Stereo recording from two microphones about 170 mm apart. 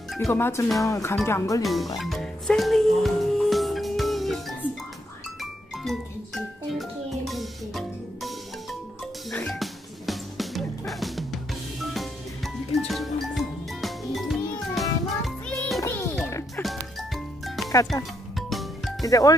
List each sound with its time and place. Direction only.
0.3 s speech: 15° left (ahead or behind)
1.6 s speech: centre (ahead or behind)
2.0 s music: centre (ahead or behind)
16.3 s music: 15° left (ahead or behind)
16.6 s music: centre (ahead or behind)
19.0 s speech: 20° left (ahead or behind)